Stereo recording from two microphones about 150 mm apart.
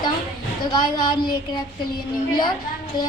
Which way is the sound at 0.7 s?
30° left (ahead or behind).